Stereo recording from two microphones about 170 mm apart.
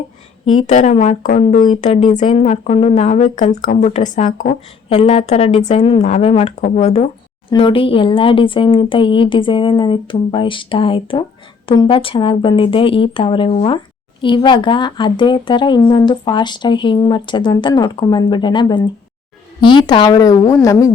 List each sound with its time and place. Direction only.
0.5 s speech: 45° left (ahead or behind)
7.5 s speech: 30° left (ahead or behind)